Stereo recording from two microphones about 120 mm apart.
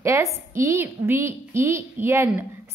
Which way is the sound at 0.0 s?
25° right (ahead or behind).